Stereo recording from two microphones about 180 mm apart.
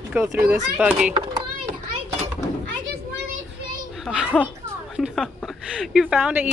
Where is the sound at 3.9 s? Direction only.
Centre (ahead or behind).